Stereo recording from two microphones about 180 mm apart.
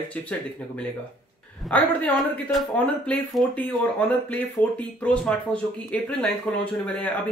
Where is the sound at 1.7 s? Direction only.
5° left (ahead or behind).